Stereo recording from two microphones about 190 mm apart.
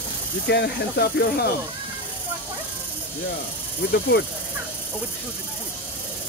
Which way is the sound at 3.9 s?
60° left (ahead or behind).